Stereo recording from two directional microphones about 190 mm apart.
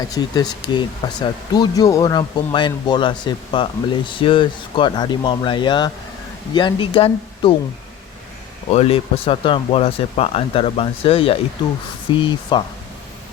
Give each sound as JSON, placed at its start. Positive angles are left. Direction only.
{"t": 0.1, "sound": "speech", "side_deg": 20}
{"t": 8.7, "sound": "speech", "side_deg": 30}